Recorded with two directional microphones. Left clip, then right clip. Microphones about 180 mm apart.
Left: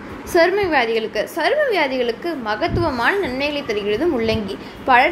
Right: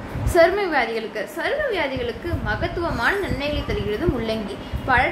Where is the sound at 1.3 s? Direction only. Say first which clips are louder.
Left 5 dB; 40° left (ahead or behind).